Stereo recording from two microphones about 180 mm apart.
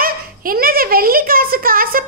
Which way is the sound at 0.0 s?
55° right (ahead or behind).